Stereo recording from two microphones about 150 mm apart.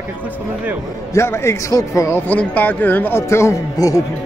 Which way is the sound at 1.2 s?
15° left (ahead or behind).